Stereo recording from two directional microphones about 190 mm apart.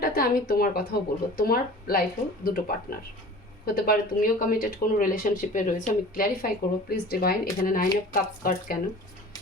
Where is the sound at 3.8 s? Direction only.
50° left (ahead or behind).